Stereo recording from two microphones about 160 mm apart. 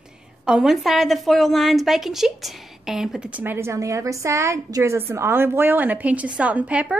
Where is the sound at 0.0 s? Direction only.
5° right (ahead or behind).